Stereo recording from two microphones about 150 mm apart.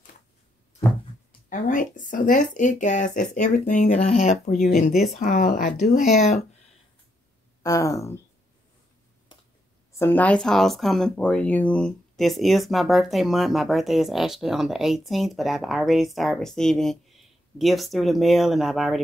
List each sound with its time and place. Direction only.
1.5 s speech: 60° left (ahead or behind)
6.0 s speech: 50° left (ahead or behind)
7.6 s speech: 20° left (ahead or behind)
9.9 s speech: 15° left (ahead or behind)